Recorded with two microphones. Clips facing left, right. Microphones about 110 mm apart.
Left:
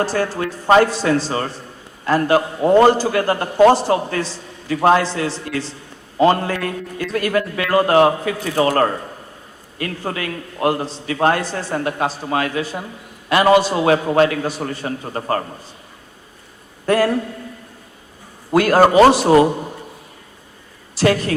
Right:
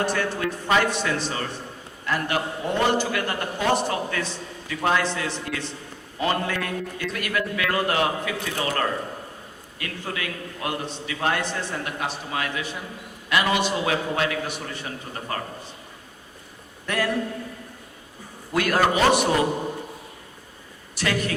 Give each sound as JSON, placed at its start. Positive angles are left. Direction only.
{"t": 0.0, "sound": "a man's voice", "side_deg": 35}
{"t": 16.8, "sound": "a man's voice", "side_deg": 35}
{"t": 18.5, "sound": "a man's voice", "side_deg": 35}
{"t": 21.0, "sound": "a man's voice", "side_deg": 35}